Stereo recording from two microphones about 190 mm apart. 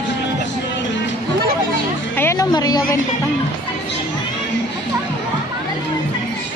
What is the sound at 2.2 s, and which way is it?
Music, 15° left (ahead or behind).